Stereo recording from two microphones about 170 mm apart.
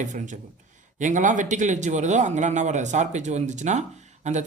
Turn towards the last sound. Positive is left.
turn(degrees=-45)  # may be behind; listen again after turning